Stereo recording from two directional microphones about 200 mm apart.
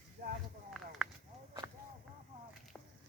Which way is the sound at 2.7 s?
Centre (ahead or behind).